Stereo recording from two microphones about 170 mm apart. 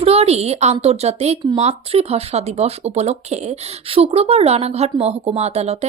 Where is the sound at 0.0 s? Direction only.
35° right (ahead or behind).